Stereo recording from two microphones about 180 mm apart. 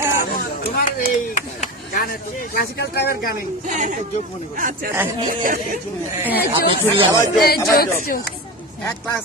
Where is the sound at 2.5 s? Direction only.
60° left (ahead or behind).